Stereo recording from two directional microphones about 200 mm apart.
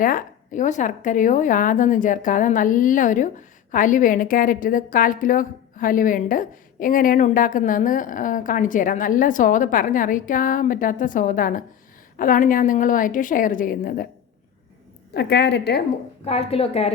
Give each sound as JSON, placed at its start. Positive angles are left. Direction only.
{"t": 0.0, "sound": "a woman's voice", "side_deg": 45}
{"t": 15.1, "sound": "a woman's voice", "side_deg": 55}
{"t": 16.2, "sound": "a woman's voice", "side_deg": 30}